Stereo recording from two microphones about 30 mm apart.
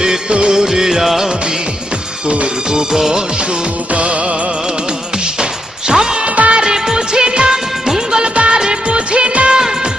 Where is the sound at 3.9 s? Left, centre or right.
Right.